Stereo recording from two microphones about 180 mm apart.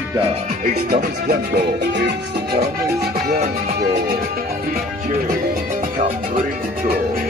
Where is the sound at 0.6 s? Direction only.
60° right (ahead or behind).